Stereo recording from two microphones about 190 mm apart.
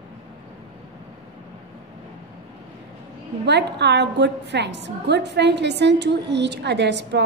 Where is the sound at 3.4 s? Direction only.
65° right (ahead or behind).